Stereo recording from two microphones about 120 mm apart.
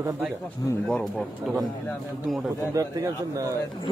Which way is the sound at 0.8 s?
10° left (ahead or behind).